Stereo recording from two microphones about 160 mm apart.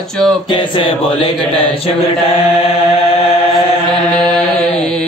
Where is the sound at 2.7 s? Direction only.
40° left (ahead or behind).